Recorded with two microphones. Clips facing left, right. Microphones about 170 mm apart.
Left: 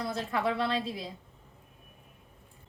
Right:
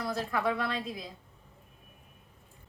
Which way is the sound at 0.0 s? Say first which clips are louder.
Even; 25° left (ahead or behind).